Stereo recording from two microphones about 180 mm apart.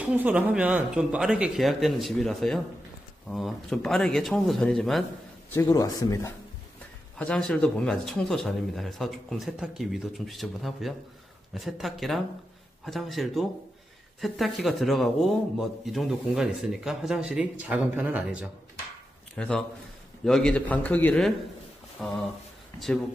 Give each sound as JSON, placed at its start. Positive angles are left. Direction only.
{"t": 0.0, "sound": "a man's voice", "side_deg": -10}
{"t": 5.5, "sound": "a man's voice", "side_deg": 15}
{"t": 7.2, "sound": "a man's voice", "side_deg": 5}
{"t": 19.3, "sound": "a man's voice", "side_deg": 5}